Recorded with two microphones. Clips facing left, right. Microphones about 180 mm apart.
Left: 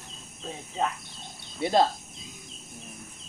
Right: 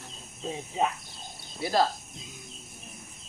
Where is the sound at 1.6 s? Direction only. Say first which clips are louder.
Left 3 dB; 25° left (ahead or behind).